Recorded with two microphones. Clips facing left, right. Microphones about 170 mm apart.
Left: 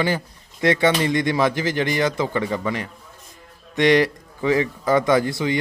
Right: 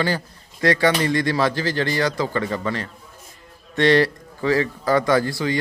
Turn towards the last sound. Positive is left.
turn(degrees=20)  # may be behind; listen again after turning